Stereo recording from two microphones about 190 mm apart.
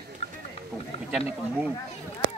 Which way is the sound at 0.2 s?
35° left (ahead or behind).